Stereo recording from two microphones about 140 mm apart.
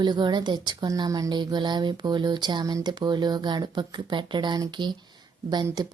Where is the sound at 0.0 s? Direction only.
30° right (ahead or behind).